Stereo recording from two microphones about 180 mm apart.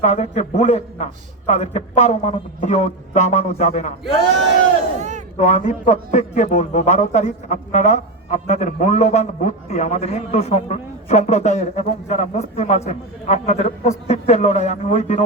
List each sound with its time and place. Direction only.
0.0 s a man's voice: 40° left (ahead or behind)
4.9 s a sound: 40° right (ahead or behind)
5.4 s a man's voice: 40° left (ahead or behind)